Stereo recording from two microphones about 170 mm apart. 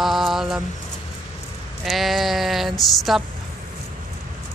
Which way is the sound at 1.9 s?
Centre (ahead or behind).